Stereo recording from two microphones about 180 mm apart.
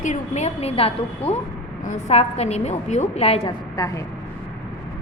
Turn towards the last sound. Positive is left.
turn(degrees=20)  # may be behind; listen again after turning